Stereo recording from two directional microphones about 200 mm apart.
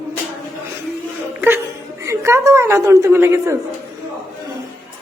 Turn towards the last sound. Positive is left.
turn(degrees=-15)  # may be behind; listen again after turning